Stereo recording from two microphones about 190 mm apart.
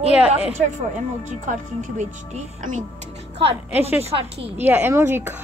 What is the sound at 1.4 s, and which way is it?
Speech, 40° right (ahead or behind).